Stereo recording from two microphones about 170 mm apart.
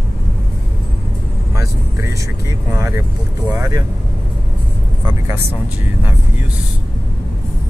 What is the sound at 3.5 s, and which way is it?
Speech, 20° right (ahead or behind).